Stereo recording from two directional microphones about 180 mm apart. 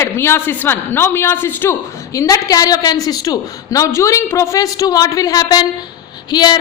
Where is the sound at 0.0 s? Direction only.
15° left (ahead or behind).